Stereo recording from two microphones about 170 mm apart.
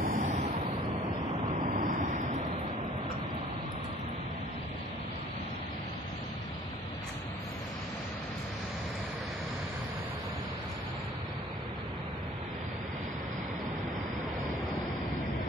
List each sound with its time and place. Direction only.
0.0 s vehicle: 50° right (ahead or behind)
1.8 s vehicle: 50° right (ahead or behind)